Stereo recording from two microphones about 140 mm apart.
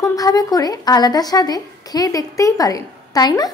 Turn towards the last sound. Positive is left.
turn(degrees=30)  # may be behind; listen again after turning